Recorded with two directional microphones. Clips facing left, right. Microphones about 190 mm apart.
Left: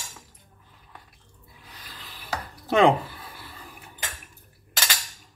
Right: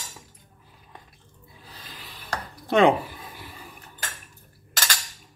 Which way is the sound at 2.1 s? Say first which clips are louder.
Even; centre (ahead or behind).